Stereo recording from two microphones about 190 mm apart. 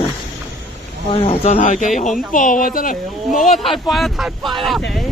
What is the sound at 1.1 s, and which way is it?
Speech, 35° left (ahead or behind).